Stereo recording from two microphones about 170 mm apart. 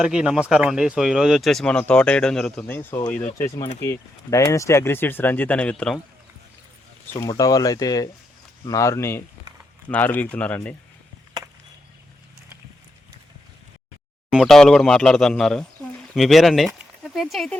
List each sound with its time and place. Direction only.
0.0 s speech: 5° right (ahead or behind)
7.1 s speech: 20° left (ahead or behind)
14.3 s speech: centre (ahead or behind)